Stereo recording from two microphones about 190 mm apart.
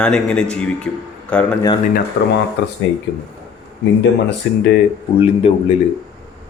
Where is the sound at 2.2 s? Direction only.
80° left.